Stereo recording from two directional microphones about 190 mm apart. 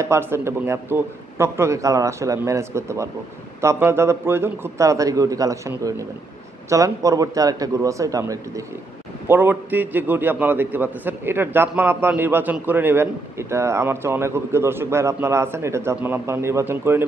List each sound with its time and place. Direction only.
0.0 s a man's voice: 15° right (ahead or behind)